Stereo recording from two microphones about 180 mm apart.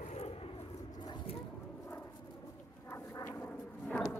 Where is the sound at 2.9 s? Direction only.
15° left (ahead or behind).